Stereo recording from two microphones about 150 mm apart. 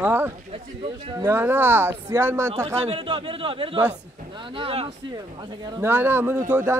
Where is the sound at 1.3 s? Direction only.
15° right (ahead or behind).